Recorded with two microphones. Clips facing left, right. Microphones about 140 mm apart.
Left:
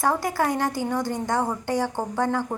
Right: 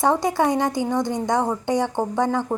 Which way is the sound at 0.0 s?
20° right (ahead or behind).